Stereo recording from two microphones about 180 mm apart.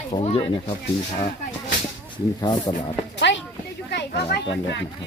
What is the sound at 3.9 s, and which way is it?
Children playing, 65° left (ahead or behind).